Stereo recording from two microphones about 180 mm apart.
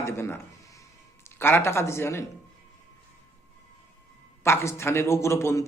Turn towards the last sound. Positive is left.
turn(degrees=15)  # may be behind; listen again after turning